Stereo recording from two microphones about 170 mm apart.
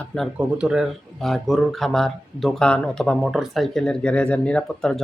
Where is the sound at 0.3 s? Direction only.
5° right (ahead or behind).